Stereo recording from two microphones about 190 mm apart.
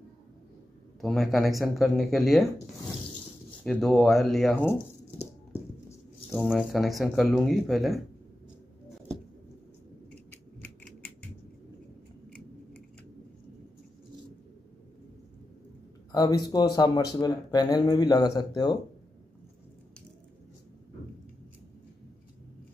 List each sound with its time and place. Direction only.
1.0 s speech: centre (ahead or behind)
3.6 s speech: 5° left (ahead or behind)
5.5 s a sound: 10° left (ahead or behind)
6.4 s speech: centre (ahead or behind)
16.1 s speech: 20° left (ahead or behind)